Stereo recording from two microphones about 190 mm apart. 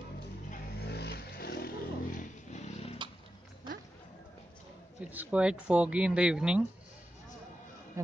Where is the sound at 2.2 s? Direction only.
40° left (ahead or behind).